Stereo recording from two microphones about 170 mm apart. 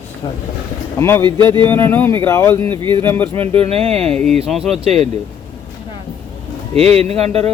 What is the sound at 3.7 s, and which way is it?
A man's voice, 35° right (ahead or behind).